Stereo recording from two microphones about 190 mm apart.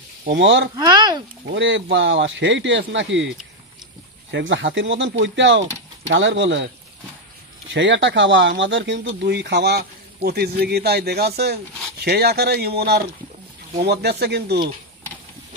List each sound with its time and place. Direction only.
0.2 s speech: 70° right (ahead or behind)
0.7 s speech: 20° right (ahead or behind)
1.5 s speech: 70° right (ahead or behind)
4.3 s speech: 75° right (ahead or behind)
7.7 s speech: 75° right (ahead or behind); by 14.7 s 60° right (ahead or behind)